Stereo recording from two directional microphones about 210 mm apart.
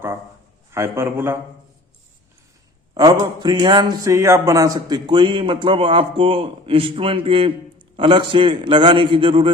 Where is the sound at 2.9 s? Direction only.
20° right (ahead or behind).